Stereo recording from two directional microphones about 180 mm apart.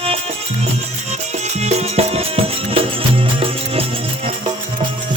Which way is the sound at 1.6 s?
35° right (ahead or behind).